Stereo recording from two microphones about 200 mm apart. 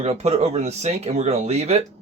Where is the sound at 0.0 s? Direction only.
35° right (ahead or behind).